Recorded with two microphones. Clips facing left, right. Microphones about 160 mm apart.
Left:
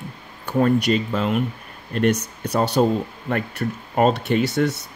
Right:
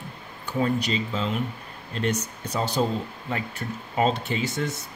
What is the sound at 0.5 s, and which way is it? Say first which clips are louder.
Speech: left 7 dB; 55° left (ahead or behind).